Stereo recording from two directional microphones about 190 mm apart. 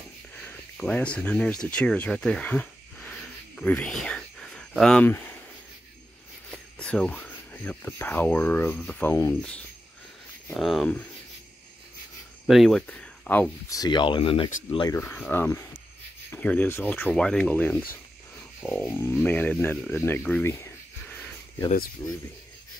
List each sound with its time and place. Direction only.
0.7 s speech: 5° left (ahead or behind)
6.5 s speech: 5° left (ahead or behind)
10.5 s speech: centre (ahead or behind)
12.4 s speech: centre (ahead or behind); by 15.0 s 25° left (ahead or behind)
15.0 s speech: 10° left (ahead or behind)
21.1 s a sound: 10° left (ahead or behind)
22.0 s speech: 20° left (ahead or behind)